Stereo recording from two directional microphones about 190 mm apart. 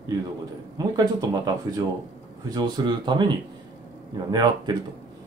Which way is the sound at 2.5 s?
20° right (ahead or behind).